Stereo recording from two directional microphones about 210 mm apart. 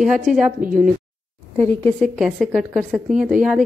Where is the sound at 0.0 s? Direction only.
Centre (ahead or behind).